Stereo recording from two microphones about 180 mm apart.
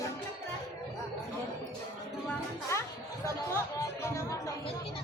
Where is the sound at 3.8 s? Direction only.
15° left (ahead or behind).